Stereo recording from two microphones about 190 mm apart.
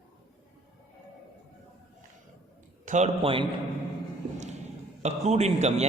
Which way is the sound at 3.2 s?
25° right (ahead or behind).